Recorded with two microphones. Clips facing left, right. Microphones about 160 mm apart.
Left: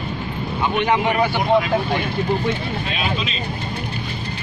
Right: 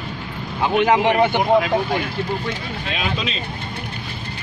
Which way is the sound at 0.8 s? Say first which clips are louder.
Right 3 dB; 90° right.